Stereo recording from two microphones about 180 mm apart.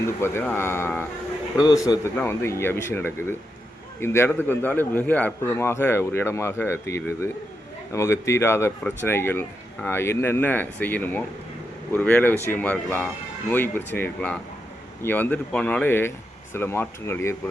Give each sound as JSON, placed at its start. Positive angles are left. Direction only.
{"t": 0.2, "sound": "a man's voice", "side_deg": 15}